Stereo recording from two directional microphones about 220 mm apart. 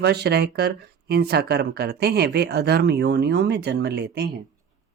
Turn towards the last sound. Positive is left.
turn(degrees=-50)  # may be behind; listen again after turning